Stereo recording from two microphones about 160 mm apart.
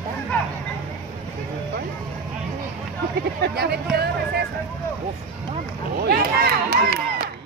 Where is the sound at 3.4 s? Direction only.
85° right.